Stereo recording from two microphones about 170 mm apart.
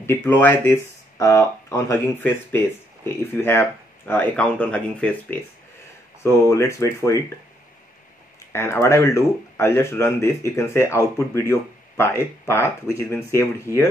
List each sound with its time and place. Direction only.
0.0 s speech: 10° left (ahead or behind)
8.5 s speech: 15° left (ahead or behind)
13.7 s speech: 15° right (ahead or behind)